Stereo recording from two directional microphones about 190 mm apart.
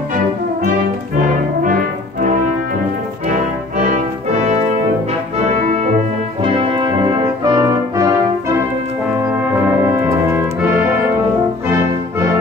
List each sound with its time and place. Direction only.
1.6 s music: 45° right (ahead or behind)
3.3 s music: 40° right (ahead or behind)
6.4 s brass instrument: 25° right (ahead or behind)
9.8 s brass instrument: 15° right (ahead or behind)